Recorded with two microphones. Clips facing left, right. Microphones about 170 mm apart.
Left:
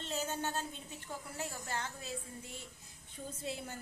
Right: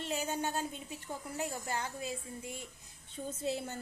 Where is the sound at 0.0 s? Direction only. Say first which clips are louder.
Right 3 dB; 10° right (ahead or behind).